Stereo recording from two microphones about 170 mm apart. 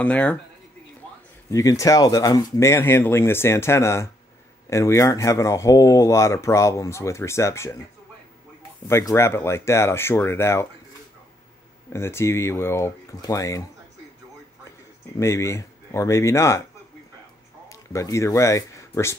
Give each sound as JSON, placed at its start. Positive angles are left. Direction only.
{"t": 0.0, "sound": "speech", "side_deg": 10}
{"t": 1.5, "sound": "speech", "side_deg": 20}
{"t": 8.8, "sound": "speech", "side_deg": 15}
{"t": 11.9, "sound": "speech", "side_deg": 15}
{"t": 15.1, "sound": "speech", "side_deg": 15}
{"t": 17.6, "sound": "speech", "side_deg": 20}